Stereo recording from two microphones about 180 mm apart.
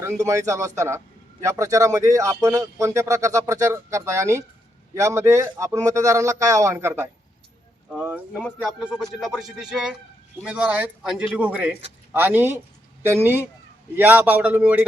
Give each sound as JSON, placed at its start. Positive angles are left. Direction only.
{"t": 0.0, "sound": "a man's voice", "side_deg": -15}
{"t": 13.9, "sound": "a man's voice", "side_deg": -10}